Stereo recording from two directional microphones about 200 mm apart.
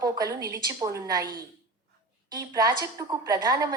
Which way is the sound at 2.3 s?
20° right (ahead or behind).